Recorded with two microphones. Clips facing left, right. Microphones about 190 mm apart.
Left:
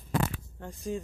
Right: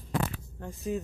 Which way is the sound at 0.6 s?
Centre (ahead or behind).